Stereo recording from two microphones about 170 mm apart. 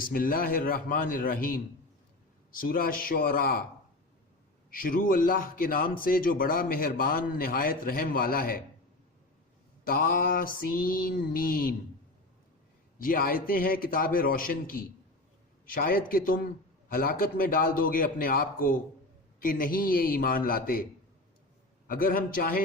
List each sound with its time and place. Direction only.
0.0 s a man's voice: 55° left (ahead or behind)
4.7 s a man's voice: 55° left (ahead or behind)
9.8 s a man's voice: 55° left (ahead or behind)
13.0 s a man's voice: 55° left (ahead or behind)
21.8 s a man's voice: 55° left (ahead or behind)